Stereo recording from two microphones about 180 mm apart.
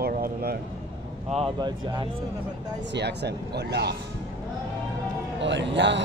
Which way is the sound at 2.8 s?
75° right (ahead or behind).